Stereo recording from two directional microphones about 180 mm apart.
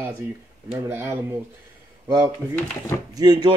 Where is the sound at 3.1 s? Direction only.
20° right (ahead or behind).